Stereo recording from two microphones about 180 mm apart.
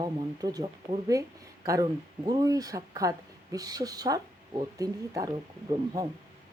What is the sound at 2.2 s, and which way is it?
Speech, 20° right (ahead or behind).